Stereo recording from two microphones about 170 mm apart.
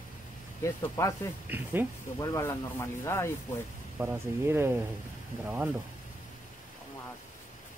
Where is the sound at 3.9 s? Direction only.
15° right (ahead or behind).